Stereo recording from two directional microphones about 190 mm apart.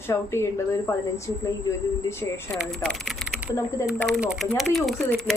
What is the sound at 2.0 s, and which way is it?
Speech, 15° left (ahead or behind).